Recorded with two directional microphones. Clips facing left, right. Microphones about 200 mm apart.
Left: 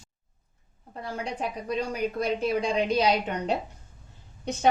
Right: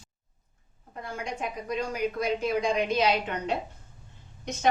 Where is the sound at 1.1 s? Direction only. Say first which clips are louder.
Left 2 dB; 35° left (ahead or behind).